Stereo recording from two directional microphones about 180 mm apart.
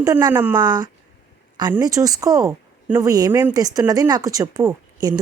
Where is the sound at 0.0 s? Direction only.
20° right (ahead or behind).